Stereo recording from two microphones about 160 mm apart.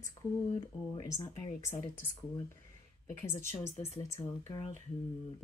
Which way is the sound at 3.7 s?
40° left (ahead or behind).